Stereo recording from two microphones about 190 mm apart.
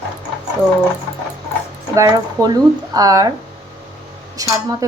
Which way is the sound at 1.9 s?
15° right (ahead or behind).